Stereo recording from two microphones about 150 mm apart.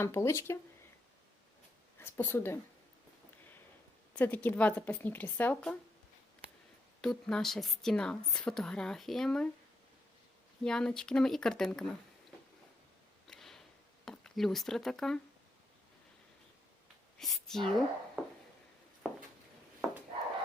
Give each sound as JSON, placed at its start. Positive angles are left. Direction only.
{"t": 0.0, "sound": "speech", "side_deg": 15}
{"t": 2.0, "sound": "speech", "side_deg": 15}
{"t": 4.1, "sound": "speech", "side_deg": 10}
{"t": 7.0, "sound": "a woman's voice", "side_deg": 5}
{"t": 10.6, "sound": "a woman's voice", "side_deg": 5}
{"t": 13.2, "sound": "tick", "side_deg": 0}
{"t": 14.0, "sound": "speech", "side_deg": 5}
{"t": 17.2, "sound": "a woman's voice", "side_deg": 0}
{"t": 18.2, "sound": "a sound", "side_deg": -5}